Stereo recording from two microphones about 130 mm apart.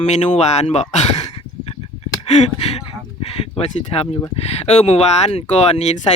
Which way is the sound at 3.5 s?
50° left (ahead or behind).